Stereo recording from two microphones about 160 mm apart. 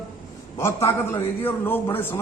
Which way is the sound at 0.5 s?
15° left (ahead or behind).